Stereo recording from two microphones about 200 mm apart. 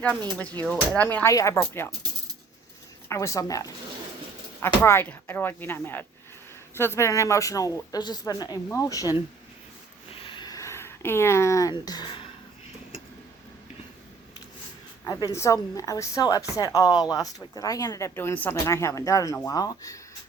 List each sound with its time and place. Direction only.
0.6 s speech: 5° left (ahead or behind)
3.1 s speech: 15° left (ahead or behind)
10.1 s a sound: 25° left (ahead or behind)
15.0 s speech: 15° left (ahead or behind)